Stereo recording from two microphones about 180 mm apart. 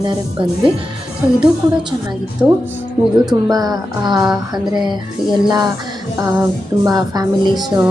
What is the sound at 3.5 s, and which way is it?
Speech, 20° right (ahead or behind).